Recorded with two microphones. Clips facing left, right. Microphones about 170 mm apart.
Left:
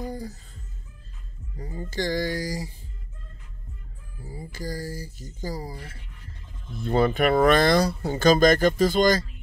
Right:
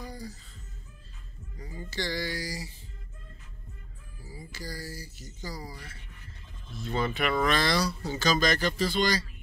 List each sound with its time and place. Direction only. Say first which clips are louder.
0.0 s music: left 7 dB; 50° left (ahead or behind)
1.6 s speech: left 6 dB; 50° left (ahead or behind)
4.2 s speech: left 7 dB; 50° left (ahead or behind)
6.8 s speech: left 8 dB; 50° left (ahead or behind)